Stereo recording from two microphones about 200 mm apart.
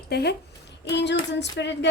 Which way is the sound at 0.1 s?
55° left (ahead or behind).